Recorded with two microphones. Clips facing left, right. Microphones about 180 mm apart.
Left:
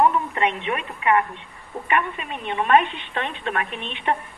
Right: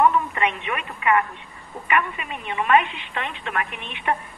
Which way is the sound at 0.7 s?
30° left (ahead or behind).